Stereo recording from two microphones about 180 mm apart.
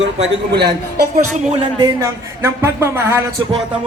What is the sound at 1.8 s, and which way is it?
Speech, 20° right (ahead or behind).